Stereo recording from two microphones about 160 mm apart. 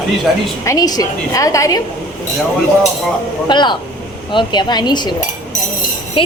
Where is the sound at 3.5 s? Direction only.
30° left (ahead or behind).